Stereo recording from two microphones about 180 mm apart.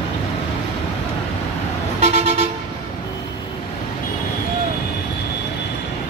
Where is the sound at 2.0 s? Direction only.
35° right (ahead or behind).